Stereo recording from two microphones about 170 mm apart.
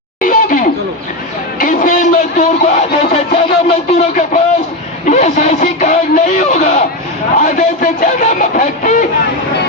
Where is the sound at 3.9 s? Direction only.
45° left (ahead or behind).